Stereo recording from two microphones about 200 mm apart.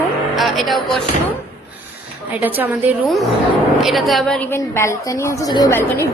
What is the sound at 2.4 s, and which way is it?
A woman's voice, 10° right (ahead or behind).